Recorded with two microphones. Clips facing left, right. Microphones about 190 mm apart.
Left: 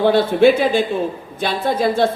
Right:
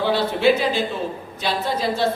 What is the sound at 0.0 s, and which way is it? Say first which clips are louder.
A woman's voice: left 6 dB; 50° left (ahead or behind).